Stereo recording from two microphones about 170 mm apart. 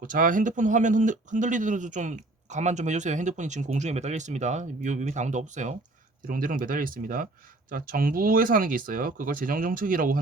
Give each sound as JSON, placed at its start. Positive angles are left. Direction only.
{"t": 0.0, "sound": "speech", "side_deg": -50}